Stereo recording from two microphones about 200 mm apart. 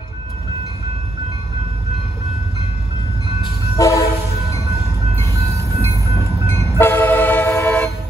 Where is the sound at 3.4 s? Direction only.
15° left (ahead or behind).